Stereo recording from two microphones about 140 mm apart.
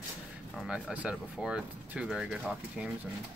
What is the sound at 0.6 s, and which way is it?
Speech, 5° right (ahead or behind).